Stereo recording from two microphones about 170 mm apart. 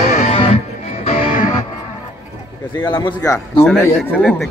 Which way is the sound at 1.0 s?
45° left (ahead or behind).